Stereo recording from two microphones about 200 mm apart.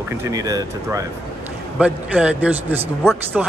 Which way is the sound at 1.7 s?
5° right (ahead or behind).